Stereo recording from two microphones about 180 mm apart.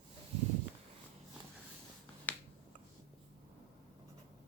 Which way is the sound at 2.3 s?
10° left (ahead or behind).